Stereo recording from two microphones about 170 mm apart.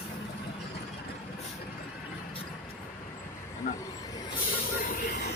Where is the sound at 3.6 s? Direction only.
55° left (ahead or behind).